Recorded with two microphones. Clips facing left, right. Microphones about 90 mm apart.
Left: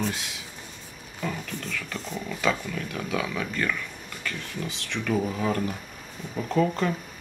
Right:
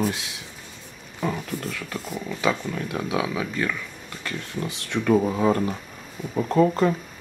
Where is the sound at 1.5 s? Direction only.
15° right (ahead or behind).